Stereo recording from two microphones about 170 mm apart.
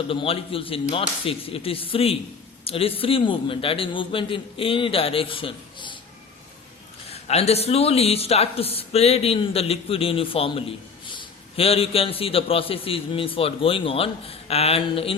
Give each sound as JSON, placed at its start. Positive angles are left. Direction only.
{"t": 0.1, "sound": "speech", "side_deg": 30}
{"t": 7.1, "sound": "speech", "side_deg": 40}